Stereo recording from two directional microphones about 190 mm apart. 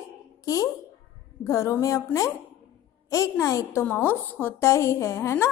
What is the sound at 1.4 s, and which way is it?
A woman's voice, 15° left (ahead or behind).